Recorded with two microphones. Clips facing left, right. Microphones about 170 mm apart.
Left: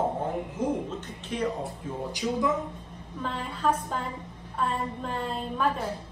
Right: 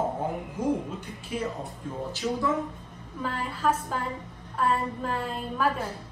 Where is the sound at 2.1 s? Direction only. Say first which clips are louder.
Left 1 dB; 15° left (ahead or behind).